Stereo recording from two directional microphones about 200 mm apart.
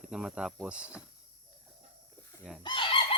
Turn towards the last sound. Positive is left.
turn(degrees=25)  # may be behind; listen again after turning